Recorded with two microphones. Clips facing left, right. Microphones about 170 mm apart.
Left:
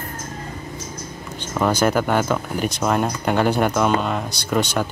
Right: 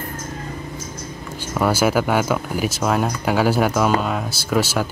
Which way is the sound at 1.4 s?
5° right (ahead or behind).